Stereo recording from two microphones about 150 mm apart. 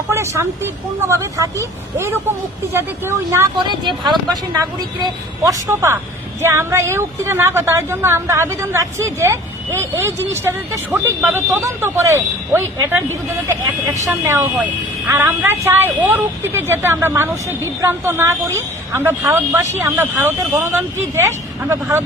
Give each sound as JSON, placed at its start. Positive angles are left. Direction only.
{"t": 0.1, "sound": "a woman's voice", "side_deg": -15}
{"t": 4.0, "sound": "speech", "side_deg": 0}
{"t": 4.5, "sound": "a woman's voice", "side_deg": -20}